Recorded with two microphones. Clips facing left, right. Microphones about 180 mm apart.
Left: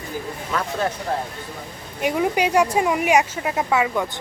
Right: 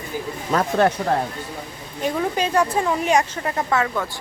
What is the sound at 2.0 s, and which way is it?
Speech, 10° left (ahead or behind).